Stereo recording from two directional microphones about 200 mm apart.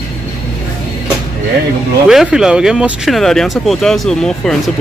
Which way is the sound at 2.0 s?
5° right (ahead or behind).